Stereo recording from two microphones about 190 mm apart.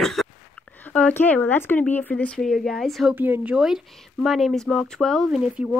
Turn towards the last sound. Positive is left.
turn(degrees=-5)  # may be behind; listen again after turning